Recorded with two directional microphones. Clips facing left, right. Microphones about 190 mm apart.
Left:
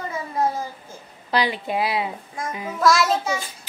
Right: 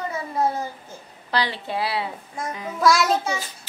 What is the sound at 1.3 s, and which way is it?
Speech, 15° left (ahead or behind).